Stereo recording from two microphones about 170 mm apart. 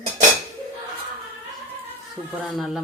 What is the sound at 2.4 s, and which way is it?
Speech, centre (ahead or behind).